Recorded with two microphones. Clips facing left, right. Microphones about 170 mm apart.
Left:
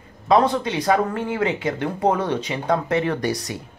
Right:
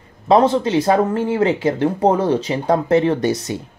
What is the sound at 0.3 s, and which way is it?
Speech, 30° right (ahead or behind).